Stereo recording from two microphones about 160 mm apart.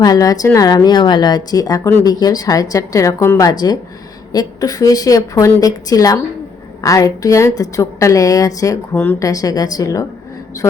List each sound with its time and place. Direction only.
0.0 s a woman's voice: 25° left (ahead or behind)